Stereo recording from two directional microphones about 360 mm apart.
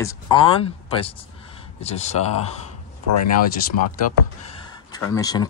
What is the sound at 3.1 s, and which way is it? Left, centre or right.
Speech, left.